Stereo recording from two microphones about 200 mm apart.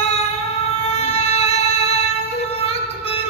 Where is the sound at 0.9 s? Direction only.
30° left (ahead or behind).